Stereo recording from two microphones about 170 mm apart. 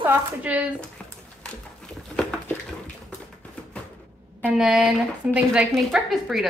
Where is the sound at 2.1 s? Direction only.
5° left (ahead or behind).